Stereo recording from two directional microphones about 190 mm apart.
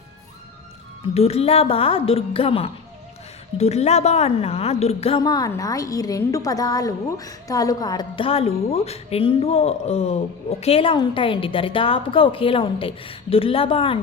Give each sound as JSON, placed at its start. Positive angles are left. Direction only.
{"t": 1.1, "sound": "a woman's voice", "side_deg": 30}